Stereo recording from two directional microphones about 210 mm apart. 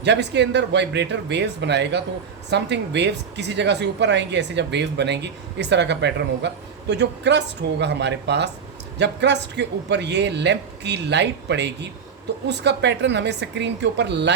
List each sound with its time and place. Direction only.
0.0 s a woman's voice: 55° right (ahead or behind)